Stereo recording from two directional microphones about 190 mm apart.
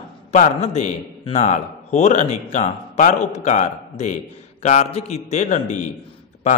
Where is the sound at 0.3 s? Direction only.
40° left (ahead or behind).